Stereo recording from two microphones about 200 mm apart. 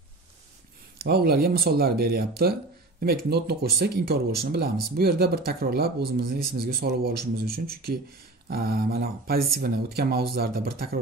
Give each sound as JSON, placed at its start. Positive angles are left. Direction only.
{"t": 0.9, "sound": "speech", "side_deg": -50}